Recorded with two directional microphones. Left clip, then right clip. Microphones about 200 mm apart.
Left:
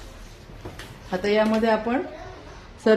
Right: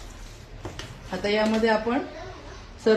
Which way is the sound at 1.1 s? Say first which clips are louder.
Left 3 dB; 50° left (ahead or behind).